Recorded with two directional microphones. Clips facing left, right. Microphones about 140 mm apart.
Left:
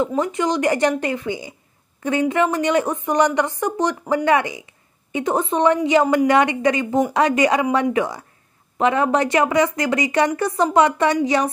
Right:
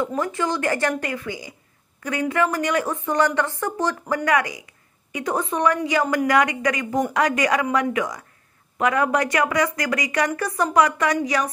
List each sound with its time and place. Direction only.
0.0 s a woman's voice: 20° left (ahead or behind)